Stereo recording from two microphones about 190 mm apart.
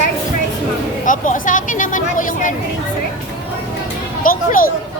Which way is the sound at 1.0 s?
45° left (ahead or behind).